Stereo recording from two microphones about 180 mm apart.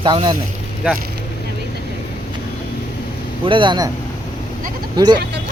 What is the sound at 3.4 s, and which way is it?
Speech, 30° right (ahead or behind).